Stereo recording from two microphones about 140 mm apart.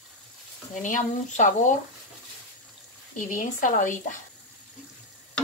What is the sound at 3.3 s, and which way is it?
Speech, 70° left (ahead or behind).